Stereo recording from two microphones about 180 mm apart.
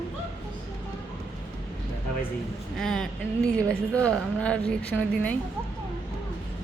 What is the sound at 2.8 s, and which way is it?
A woman's voice, centre (ahead or behind).